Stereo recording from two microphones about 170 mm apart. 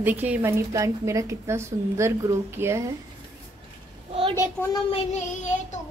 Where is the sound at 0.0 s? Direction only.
10° right (ahead or behind).